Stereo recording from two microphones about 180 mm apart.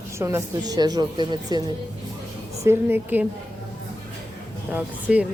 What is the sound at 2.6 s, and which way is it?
Speech, 10° right (ahead or behind).